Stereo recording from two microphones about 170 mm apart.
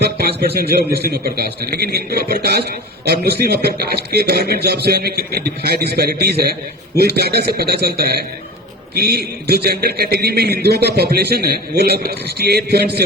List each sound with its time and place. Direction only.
0.2 s a man's voice: 70° right (ahead or behind)